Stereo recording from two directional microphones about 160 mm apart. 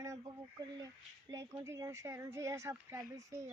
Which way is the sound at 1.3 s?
20° right (ahead or behind).